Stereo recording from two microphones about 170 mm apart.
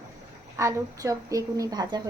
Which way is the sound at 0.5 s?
20° right (ahead or behind).